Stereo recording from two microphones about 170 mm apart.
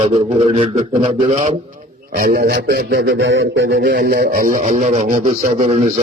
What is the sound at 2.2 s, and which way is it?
A man's voice, 60° right (ahead or behind).